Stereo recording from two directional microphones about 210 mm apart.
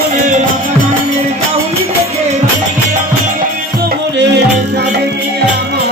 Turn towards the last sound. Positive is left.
turn(degrees=-55)  # may be behind; listen again after turning